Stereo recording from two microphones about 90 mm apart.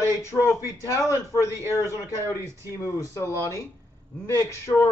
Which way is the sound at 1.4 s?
30° right (ahead or behind).